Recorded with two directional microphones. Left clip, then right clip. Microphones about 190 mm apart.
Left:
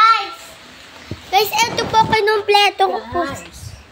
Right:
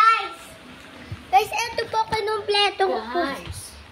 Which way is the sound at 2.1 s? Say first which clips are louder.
Left 9 dB; 35° left (ahead or behind).